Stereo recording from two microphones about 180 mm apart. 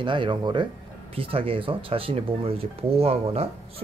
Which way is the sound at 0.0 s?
25° right (ahead or behind).